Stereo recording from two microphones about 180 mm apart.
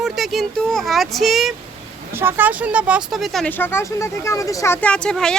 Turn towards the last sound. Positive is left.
turn(degrees=5)  # may be behind; listen again after turning